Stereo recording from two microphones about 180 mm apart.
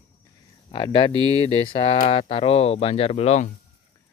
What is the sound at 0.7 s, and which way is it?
Speech, 25° left (ahead or behind).